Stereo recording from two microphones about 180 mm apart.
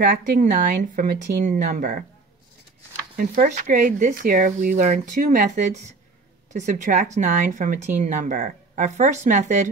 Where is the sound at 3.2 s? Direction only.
45° right (ahead or behind).